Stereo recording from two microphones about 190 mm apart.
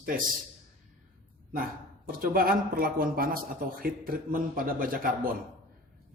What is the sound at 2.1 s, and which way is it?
Speech, 50° right (ahead or behind).